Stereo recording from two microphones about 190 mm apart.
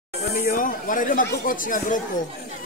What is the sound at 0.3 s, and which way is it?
Speech, 45° left (ahead or behind).